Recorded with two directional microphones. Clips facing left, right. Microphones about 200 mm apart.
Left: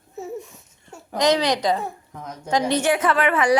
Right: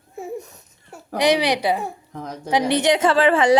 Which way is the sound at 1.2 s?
15° right (ahead or behind).